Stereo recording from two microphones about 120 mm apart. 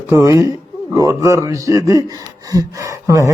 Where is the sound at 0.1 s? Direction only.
25° right (ahead or behind).